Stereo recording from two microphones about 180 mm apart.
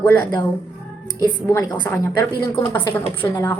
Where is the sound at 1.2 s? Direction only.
25° left (ahead or behind).